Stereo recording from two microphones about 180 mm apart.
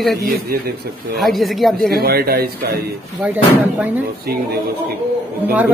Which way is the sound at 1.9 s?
60° right (ahead or behind).